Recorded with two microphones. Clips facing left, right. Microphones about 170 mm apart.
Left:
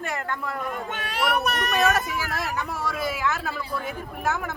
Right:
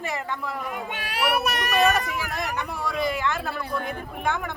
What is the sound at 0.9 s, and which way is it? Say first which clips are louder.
Speech: even; 10° right (ahead or behind).